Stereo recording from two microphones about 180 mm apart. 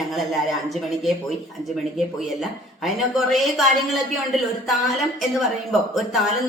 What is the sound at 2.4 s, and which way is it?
Speech, centre (ahead or behind).